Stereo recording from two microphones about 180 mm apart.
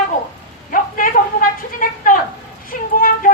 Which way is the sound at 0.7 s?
50° left (ahead or behind).